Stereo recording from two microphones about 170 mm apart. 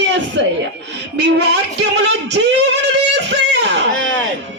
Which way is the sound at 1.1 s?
80° right.